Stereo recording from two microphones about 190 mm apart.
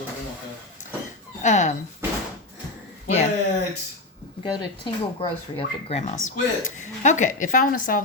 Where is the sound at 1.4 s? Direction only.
40° left (ahead or behind).